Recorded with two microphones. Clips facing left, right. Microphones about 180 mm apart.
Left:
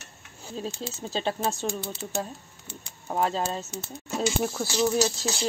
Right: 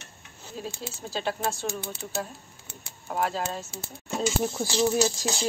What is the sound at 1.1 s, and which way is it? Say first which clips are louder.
Speech: left 1 dB; 25° left (ahead or behind).